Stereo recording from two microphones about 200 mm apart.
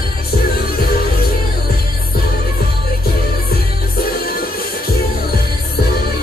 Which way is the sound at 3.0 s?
50° left (ahead or behind).